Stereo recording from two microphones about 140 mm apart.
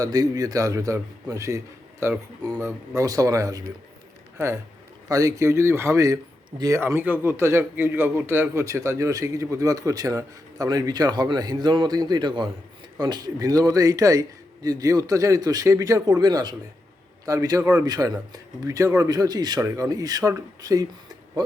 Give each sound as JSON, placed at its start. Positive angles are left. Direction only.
{"t": 0.0, "sound": "a man's voice", "side_deg": -25}